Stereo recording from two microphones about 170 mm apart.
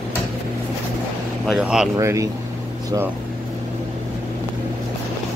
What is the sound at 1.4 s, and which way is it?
Speech, centre (ahead or behind).